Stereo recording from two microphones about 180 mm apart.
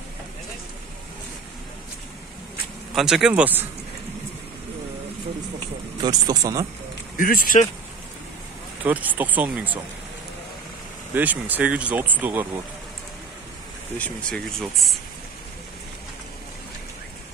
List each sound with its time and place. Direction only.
2.9 s speech: centre (ahead or behind)
6.0 s speech: 20° right (ahead or behind)
7.2 s speech: 50° left (ahead or behind)
8.8 s speech: 10° right (ahead or behind)
11.1 s speech: 10° right (ahead or behind)
13.9 s speech: 5° left (ahead or behind)